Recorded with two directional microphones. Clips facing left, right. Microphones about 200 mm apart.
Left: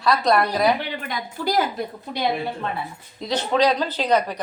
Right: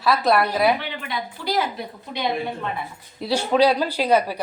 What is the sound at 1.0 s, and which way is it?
A woman's voice, 45° left (ahead or behind).